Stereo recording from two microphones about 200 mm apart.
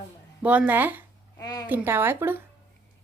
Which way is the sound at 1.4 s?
20° left (ahead or behind).